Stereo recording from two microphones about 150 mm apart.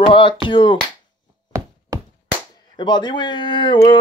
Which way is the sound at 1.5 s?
20° right (ahead or behind).